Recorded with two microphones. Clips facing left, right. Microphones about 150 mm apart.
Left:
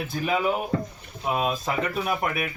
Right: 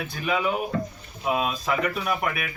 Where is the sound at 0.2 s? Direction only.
35° left (ahead or behind).